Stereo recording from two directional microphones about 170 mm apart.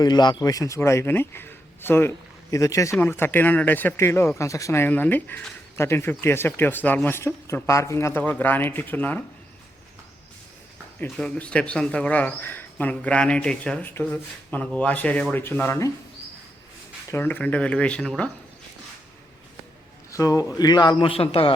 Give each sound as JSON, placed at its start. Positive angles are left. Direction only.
{"t": 0.0, "sound": "a man's voice", "side_deg": 25}
{"t": 11.0, "sound": "speech", "side_deg": 5}
{"t": 17.1, "sound": "speech", "side_deg": 10}
{"t": 20.1, "sound": "a man's voice", "side_deg": 20}